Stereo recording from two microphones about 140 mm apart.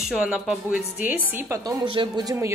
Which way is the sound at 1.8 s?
35° right (ahead or behind).